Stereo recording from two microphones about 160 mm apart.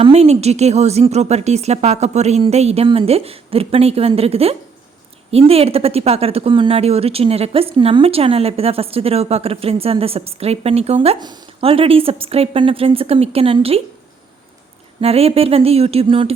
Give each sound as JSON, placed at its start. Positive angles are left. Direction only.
{"t": 0.0, "sound": "a woman's voice", "side_deg": -40}
{"t": 11.2, "sound": "speech", "side_deg": -25}
{"t": 15.0, "sound": "speech", "side_deg": -40}